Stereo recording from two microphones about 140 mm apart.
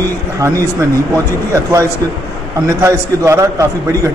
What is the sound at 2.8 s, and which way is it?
Speech, 20° right (ahead or behind).